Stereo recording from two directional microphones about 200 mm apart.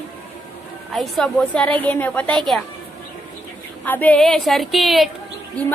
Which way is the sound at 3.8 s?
10° left (ahead or behind).